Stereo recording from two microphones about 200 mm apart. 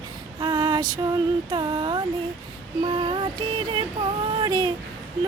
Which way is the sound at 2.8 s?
25° right (ahead or behind).